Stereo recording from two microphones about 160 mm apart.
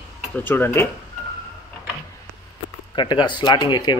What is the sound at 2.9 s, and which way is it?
Speech, 30° left (ahead or behind).